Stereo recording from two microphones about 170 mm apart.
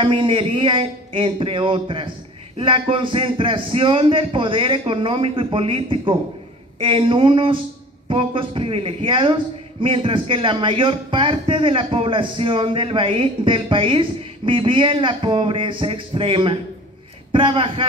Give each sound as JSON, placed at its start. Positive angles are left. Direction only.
{"t": 0.0, "sound": "a man's voice", "side_deg": -30}